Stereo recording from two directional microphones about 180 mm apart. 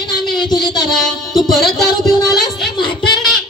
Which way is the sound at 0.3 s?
25° left (ahead or behind).